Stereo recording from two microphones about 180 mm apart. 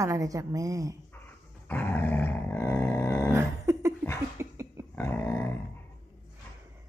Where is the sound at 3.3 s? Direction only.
15° right (ahead or behind).